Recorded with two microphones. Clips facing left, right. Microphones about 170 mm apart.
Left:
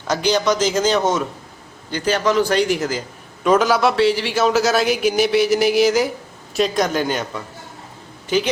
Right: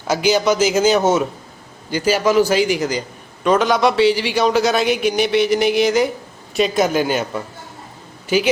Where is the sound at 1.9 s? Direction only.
10° right (ahead or behind).